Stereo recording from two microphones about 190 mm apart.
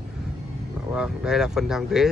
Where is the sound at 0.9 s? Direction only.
5° right (ahead or behind).